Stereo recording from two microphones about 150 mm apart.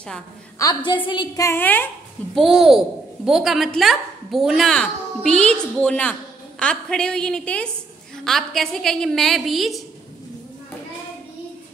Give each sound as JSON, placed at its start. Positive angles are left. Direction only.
{"t": 0.6, "sound": "a woman's voice", "side_deg": 30}
{"t": 1.4, "sound": "a woman's voice", "side_deg": 15}
{"t": 2.3, "sound": "a woman's voice", "side_deg": 0}